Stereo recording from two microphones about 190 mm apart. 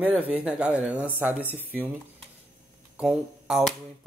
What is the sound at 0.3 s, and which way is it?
Speech, 5° right (ahead or behind).